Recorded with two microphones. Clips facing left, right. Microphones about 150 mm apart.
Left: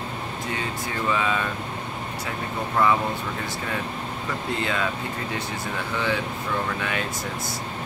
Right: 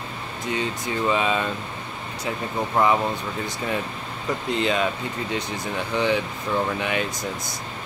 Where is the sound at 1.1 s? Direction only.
20° right (ahead or behind).